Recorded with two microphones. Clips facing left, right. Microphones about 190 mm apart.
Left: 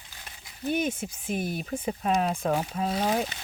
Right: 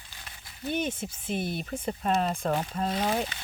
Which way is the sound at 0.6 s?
10° left (ahead or behind).